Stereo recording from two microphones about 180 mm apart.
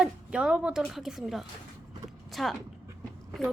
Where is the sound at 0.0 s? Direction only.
5° right (ahead or behind).